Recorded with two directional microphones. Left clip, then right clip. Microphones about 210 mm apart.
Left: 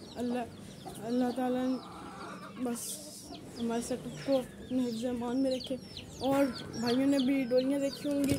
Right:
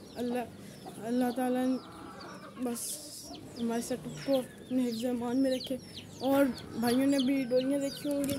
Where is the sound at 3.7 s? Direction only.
5° right (ahead or behind).